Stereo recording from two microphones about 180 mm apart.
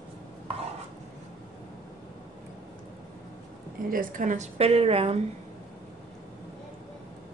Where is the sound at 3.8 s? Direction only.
50° right (ahead or behind); by 5.1 s 35° right (ahead or behind).